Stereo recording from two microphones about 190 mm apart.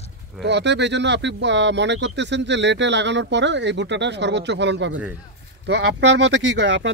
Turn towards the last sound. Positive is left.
turn(degrees=-70)  # may be behind; listen again after turning